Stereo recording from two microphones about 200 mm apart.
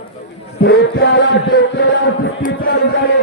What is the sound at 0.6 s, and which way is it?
Chant, 60° left (ahead or behind).